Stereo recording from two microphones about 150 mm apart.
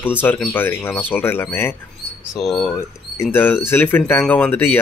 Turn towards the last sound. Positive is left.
turn(degrees=15)  # may be behind; listen again after turning